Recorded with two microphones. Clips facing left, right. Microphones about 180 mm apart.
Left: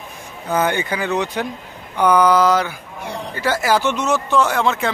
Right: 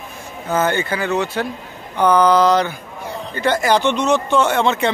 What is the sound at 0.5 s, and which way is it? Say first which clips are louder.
Speech: right 1 dB; 15° left (ahead or behind).